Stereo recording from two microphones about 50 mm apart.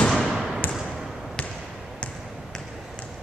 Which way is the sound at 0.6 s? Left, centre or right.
Left.